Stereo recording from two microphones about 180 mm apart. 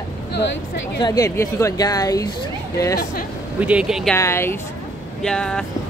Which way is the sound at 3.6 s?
5° right (ahead or behind).